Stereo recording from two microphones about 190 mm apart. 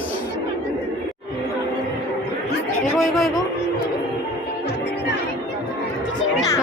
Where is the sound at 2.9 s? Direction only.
Centre (ahead or behind).